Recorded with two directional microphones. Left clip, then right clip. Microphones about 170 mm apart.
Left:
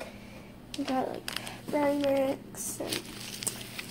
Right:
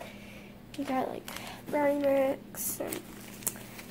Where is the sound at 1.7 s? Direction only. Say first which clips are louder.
Right 1 dB; centre (ahead or behind).